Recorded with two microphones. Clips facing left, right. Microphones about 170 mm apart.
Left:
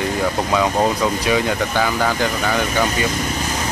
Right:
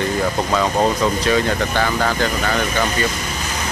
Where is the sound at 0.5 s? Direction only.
10° left (ahead or behind).